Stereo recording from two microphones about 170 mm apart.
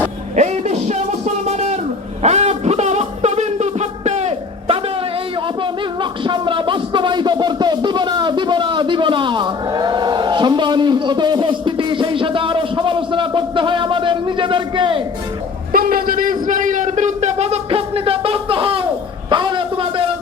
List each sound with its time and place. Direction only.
0.3 s music: 40° right (ahead or behind)
6.0 s music: 30° right (ahead or behind)
15.7 s a sound: 60° right (ahead or behind); by 20.1 s 30° right (ahead or behind)